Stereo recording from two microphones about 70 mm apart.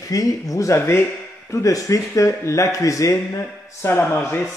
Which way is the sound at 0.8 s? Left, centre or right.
Left.